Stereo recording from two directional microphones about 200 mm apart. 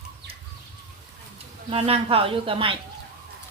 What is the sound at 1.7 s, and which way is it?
Speech, 30° right (ahead or behind).